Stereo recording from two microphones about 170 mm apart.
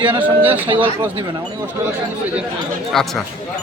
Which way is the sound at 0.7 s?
30° right (ahead or behind).